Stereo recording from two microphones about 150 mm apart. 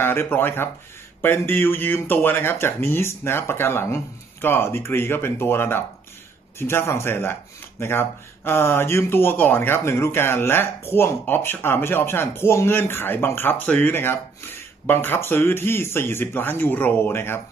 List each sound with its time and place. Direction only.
0.0 s speech: 15° left (ahead or behind)